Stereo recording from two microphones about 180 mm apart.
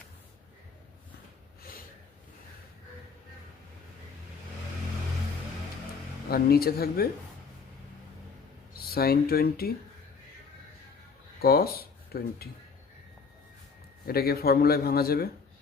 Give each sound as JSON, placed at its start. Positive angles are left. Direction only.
{"t": 6.3, "sound": "speech", "side_deg": 60}
{"t": 8.9, "sound": "speech", "side_deg": 60}
{"t": 11.3, "sound": "speech", "side_deg": 60}
{"t": 14.1, "sound": "speech", "side_deg": 60}